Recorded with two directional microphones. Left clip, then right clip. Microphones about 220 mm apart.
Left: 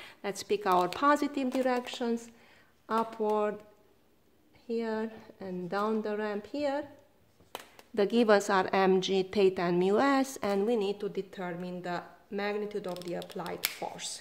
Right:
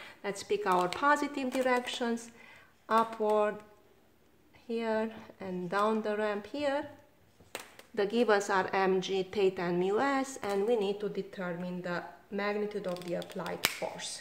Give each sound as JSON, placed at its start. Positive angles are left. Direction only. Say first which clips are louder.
{"t": 0.0, "sound": "speech", "louder": "left 1 dB", "side_deg": 50}
{"t": 4.6, "sound": "speech", "louder": "right 1 dB", "side_deg": 25}
{"t": 7.9, "sound": "a woman's voice", "louder": "left 3 dB", "side_deg": 40}